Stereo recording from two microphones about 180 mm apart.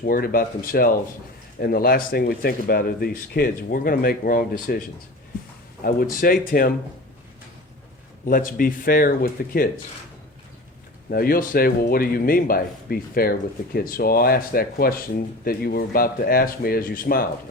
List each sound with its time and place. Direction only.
0.0 s speech: 55° left (ahead or behind)
5.8 s speech: 55° left (ahead or behind)
8.2 s speech: 50° left (ahead or behind)
11.1 s speech: 55° left (ahead or behind)